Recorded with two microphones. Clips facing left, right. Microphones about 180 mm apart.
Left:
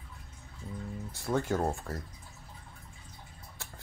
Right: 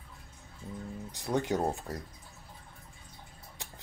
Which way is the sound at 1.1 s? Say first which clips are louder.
Even; 20° right (ahead or behind).